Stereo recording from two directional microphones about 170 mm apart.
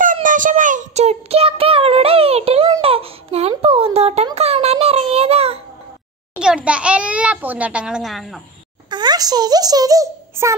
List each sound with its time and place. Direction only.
0.0 s child singing: 50° right (ahead or behind); by 2.7 s 35° right (ahead or behind)
2.8 s a sound: 35° right (ahead or behind)
6.4 s a child's voice: 5° right (ahead or behind)
8.9 s a child's voice: 25° right (ahead or behind)